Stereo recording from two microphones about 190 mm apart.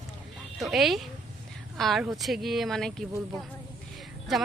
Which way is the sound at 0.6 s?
Centre (ahead or behind).